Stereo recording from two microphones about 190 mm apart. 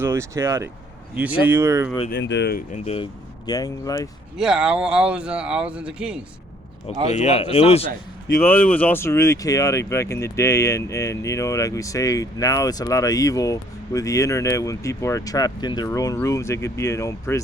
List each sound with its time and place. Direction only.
0.0 s speech: 15° right (ahead or behind)
2.0 s speech: 65° left (ahead or behind)
2.7 s speech: 30° left (ahead or behind)
4.4 s speech: 5° right (ahead or behind)
7.1 s speech: 35° left (ahead or behind)
8.4 s speech: 10° left (ahead or behind)